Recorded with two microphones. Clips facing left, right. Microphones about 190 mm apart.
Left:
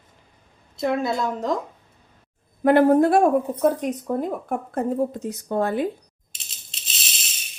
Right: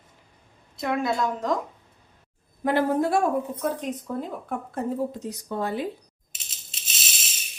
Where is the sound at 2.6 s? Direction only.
55° left (ahead or behind).